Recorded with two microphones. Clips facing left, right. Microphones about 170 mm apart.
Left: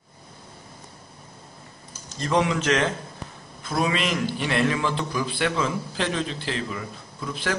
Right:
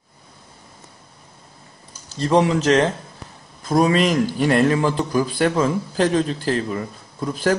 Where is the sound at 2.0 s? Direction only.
35° right (ahead or behind).